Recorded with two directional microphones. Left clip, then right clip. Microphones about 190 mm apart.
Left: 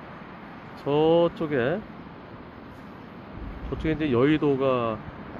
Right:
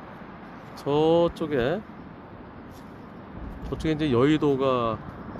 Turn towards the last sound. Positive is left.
turn(degrees=-5)  # may be behind; listen again after turning